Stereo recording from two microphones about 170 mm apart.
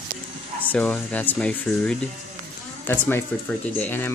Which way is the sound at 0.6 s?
10° left (ahead or behind).